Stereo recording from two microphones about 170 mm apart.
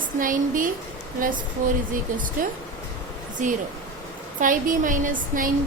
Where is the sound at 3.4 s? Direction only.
50° right (ahead or behind).